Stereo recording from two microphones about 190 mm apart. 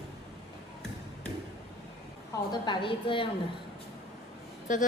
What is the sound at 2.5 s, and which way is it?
Speech, 25° left (ahead or behind).